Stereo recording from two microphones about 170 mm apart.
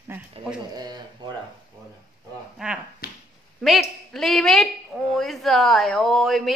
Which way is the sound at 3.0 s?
60° left (ahead or behind).